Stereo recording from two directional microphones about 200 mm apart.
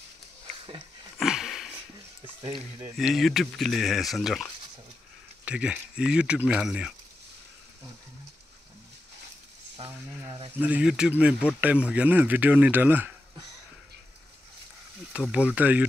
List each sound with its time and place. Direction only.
1.1 s sniff: centre (ahead or behind)
3.0 s speech: centre (ahead or behind)
9.8 s speech: 30° right (ahead or behind)
10.5 s speech: 10° right (ahead or behind)
15.1 s speech: 5° right (ahead or behind)